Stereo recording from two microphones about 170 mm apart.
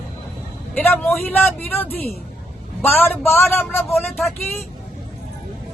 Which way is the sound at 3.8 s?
Centre (ahead or behind).